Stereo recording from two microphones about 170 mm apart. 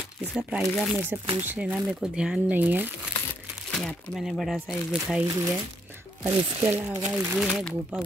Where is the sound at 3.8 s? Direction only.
Centre (ahead or behind).